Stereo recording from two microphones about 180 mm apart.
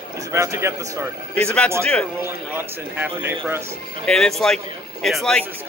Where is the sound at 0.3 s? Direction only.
15° right (ahead or behind).